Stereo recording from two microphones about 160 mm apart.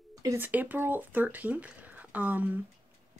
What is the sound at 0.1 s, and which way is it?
Speech, 20° right (ahead or behind).